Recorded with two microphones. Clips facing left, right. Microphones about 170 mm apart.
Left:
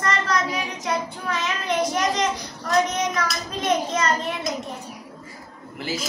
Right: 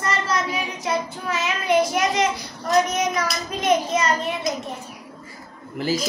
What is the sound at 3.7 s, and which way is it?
Speech, 10° right (ahead or behind).